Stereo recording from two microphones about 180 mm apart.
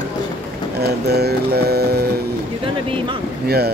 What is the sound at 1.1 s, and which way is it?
Speech, 65° right (ahead or behind).